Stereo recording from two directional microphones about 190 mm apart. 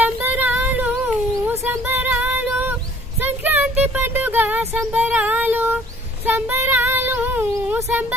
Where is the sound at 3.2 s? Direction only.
10° right (ahead or behind).